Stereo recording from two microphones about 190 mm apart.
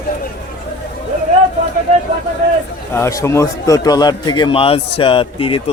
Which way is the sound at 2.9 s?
15° left (ahead or behind).